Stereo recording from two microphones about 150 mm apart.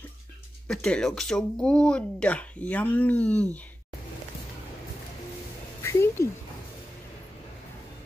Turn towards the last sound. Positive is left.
turn(degrees=15)  # may be behind; listen again after turning